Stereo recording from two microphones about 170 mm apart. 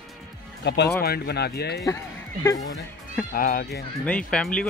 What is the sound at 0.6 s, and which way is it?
Speech, 85° left.